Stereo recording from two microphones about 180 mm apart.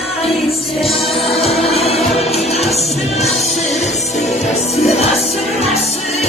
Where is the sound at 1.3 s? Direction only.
35° left (ahead or behind).